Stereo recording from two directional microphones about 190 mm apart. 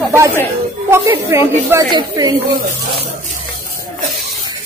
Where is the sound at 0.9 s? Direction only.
15° right (ahead or behind).